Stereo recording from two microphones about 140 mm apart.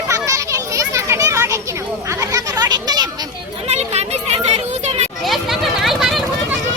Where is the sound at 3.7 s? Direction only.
50° right (ahead or behind).